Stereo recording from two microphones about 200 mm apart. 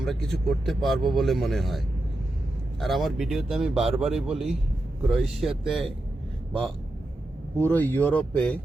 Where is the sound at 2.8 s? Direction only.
Centre (ahead or behind).